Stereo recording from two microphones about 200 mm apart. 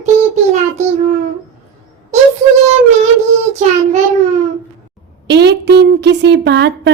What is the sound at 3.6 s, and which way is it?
Child singing, 35° right (ahead or behind).